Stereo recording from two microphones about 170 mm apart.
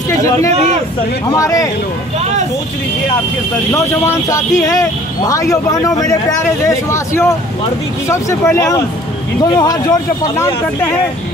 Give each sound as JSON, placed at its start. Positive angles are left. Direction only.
{"t": 1.3, "sound": "speech", "side_deg": 20}
{"t": 3.7, "sound": "speech", "side_deg": 15}